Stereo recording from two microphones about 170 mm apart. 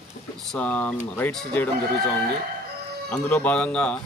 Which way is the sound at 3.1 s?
10° left (ahead or behind).